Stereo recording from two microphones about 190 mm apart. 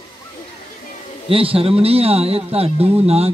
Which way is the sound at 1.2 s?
30° right (ahead or behind).